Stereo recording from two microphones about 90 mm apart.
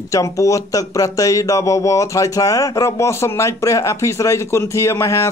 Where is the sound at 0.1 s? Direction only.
35° left (ahead or behind).